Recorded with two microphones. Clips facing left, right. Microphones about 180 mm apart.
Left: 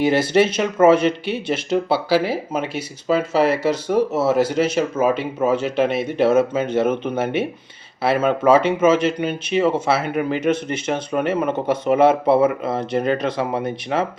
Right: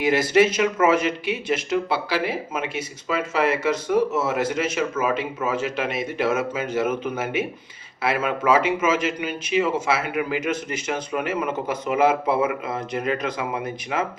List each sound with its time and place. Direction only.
0.0 s speech: 30° left (ahead or behind)